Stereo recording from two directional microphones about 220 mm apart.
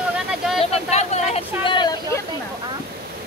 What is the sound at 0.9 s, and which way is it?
Speech, 30° left (ahead or behind).